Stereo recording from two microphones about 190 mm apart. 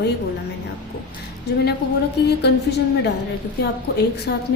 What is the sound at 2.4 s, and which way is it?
A woman's voice, 60° left (ahead or behind).